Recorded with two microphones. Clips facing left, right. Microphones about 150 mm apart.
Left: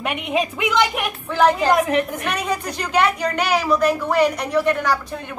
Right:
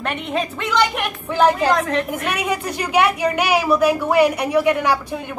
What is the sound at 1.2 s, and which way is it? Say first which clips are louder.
Speech: right 1 dB; 10° right (ahead or behind).